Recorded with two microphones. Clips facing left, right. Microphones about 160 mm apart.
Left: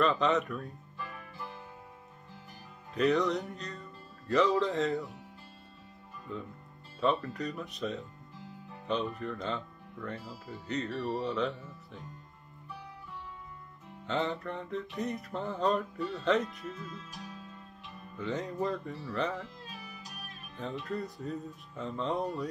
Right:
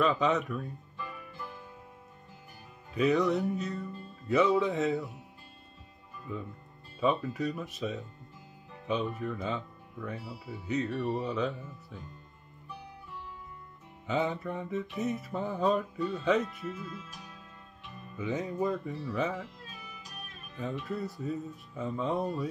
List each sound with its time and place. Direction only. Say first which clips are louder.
0.0 s speech: even; centre (ahead or behind)
2.9 s speech: right 1 dB; centre (ahead or behind)
6.3 s speech: right 1 dB; 5° right (ahead or behind)
14.0 s speech: right 2 dB; 5° right (ahead or behind)
18.1 s speech: right 2 dB; 5° right (ahead or behind)
20.5 s speech: right 1 dB; centre (ahead or behind)